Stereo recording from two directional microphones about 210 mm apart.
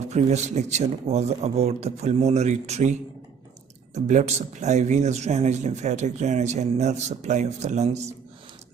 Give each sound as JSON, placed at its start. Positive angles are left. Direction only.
{"t": 0.0, "sound": "a man's voice", "side_deg": -30}
{"t": 3.9, "sound": "a man's voice", "side_deg": -35}